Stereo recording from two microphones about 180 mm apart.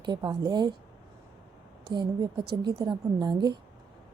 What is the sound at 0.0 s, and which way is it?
Speech, 25° right (ahead or behind).